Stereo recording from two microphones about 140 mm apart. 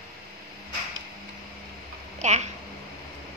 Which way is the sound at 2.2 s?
55° right (ahead or behind).